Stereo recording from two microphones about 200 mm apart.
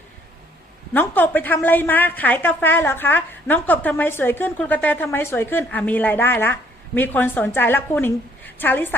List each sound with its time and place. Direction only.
0.9 s a woman's voice: 10° left (ahead or behind)